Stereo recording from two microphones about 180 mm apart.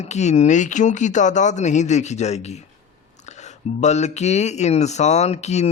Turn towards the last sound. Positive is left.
turn(degrees=40)  # may be behind; listen again after turning